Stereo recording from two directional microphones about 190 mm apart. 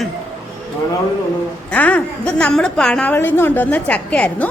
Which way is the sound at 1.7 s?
5° left (ahead or behind).